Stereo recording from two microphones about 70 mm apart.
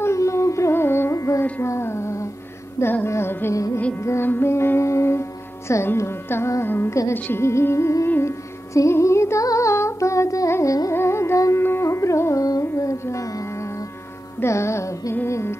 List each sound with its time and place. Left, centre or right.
0.0 s music: left
1.1 s music: left
1.4 s music: left
11.0 s music: left
14.4 s music: left